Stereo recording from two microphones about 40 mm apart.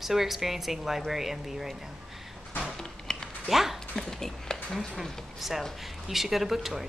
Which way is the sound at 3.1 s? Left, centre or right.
Centre.